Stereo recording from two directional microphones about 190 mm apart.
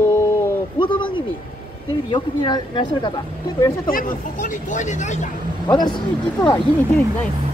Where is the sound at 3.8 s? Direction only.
45° left (ahead or behind).